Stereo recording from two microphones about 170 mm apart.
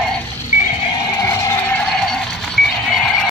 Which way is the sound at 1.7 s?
5° left (ahead or behind).